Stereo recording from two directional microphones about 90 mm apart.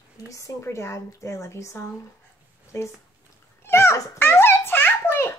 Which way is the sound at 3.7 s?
30° left (ahead or behind).